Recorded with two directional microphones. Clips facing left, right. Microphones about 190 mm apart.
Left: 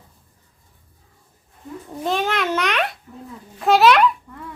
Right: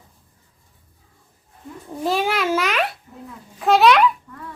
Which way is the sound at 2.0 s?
5° right (ahead or behind).